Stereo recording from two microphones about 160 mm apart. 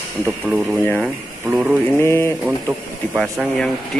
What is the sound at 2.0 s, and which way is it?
Speech, 15° left (ahead or behind).